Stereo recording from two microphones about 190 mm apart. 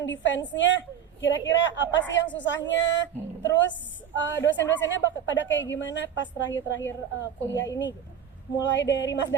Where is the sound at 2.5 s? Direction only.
75° left (ahead or behind).